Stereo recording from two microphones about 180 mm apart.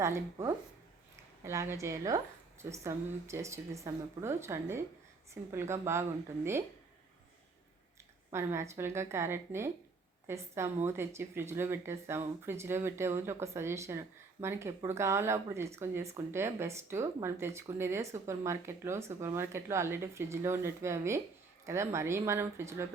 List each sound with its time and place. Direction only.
0.0 s speech: 15° right (ahead or behind)
8.3 s speech: 15° right (ahead or behind)